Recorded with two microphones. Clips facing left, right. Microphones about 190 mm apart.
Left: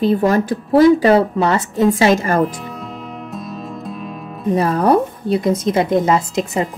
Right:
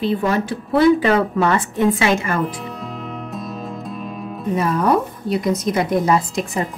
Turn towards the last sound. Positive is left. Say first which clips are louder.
# left 2 dB
turn(degrees=25)  # may be behind; listen again after turning